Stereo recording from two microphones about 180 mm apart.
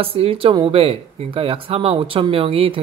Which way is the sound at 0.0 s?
30° right (ahead or behind).